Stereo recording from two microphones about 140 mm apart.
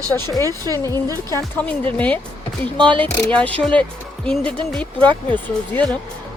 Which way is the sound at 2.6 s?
35° right (ahead or behind).